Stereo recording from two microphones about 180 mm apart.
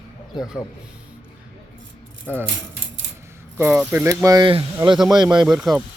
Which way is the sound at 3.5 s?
10° right (ahead or behind).